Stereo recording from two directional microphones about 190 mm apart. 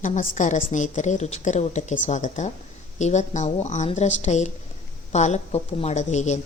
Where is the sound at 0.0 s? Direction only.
40° left (ahead or behind).